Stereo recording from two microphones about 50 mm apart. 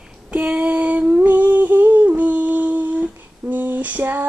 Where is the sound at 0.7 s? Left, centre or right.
Right.